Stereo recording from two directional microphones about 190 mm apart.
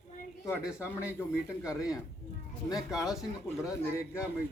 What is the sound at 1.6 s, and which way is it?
Speech, 5° right (ahead or behind).